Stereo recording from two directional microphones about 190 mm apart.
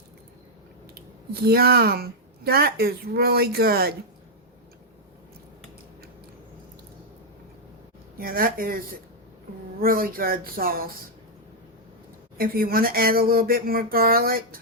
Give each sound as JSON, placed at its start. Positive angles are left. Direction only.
{"t": 1.5, "sound": "speech", "side_deg": -55}
{"t": 8.2, "sound": "speech", "side_deg": -50}
{"t": 9.8, "sound": "speech", "side_deg": -50}
{"t": 12.4, "sound": "speech", "side_deg": -50}